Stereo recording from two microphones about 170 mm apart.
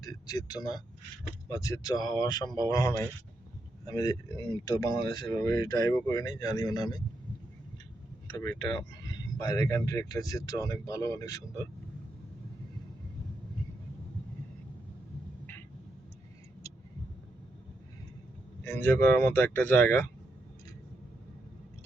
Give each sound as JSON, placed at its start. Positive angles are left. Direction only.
{"t": 0.0, "sound": "speech", "side_deg": 20}
{"t": 8.4, "sound": "speech", "side_deg": 20}
{"t": 18.6, "sound": "speech", "side_deg": 15}